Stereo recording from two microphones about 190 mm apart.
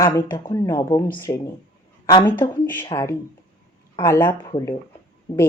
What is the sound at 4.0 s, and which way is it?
Speech, 20° left (ahead or behind).